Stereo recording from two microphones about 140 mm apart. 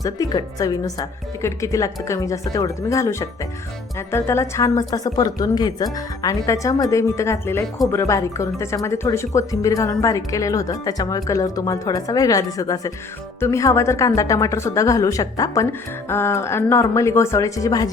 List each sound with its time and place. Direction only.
0.0 s speech: 25° left (ahead or behind)